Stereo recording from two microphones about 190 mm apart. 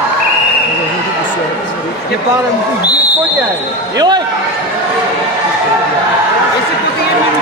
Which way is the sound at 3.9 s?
20° right (ahead or behind).